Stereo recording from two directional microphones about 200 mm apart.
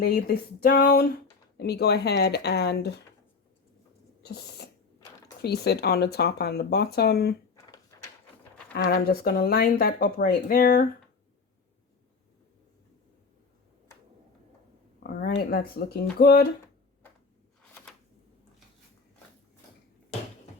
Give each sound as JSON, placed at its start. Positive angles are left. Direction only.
{"t": 0.0, "sound": "speech", "side_deg": 50}
{"t": 4.2, "sound": "a sound", "side_deg": 55}
{"t": 5.4, "sound": "speech", "side_deg": 55}
{"t": 7.5, "sound": "a sound", "side_deg": 15}
{"t": 8.7, "sound": "speech", "side_deg": 50}
{"t": 15.0, "sound": "speech", "side_deg": 50}